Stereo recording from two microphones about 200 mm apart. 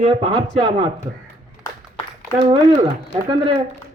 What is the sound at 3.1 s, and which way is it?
Speech, 20° right (ahead or behind).